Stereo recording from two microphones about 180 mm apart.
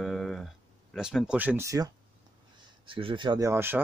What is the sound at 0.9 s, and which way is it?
Speech, 5° right (ahead or behind).